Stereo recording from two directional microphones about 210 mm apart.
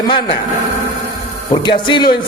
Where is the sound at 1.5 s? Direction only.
25° left (ahead or behind).